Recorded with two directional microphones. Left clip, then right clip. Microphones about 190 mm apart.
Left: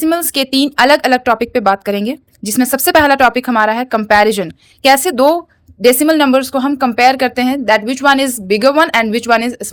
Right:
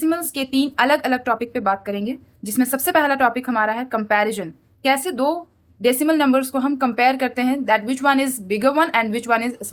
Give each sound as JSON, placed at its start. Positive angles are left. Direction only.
{"t": 0.0, "sound": "a woman's voice", "side_deg": 45}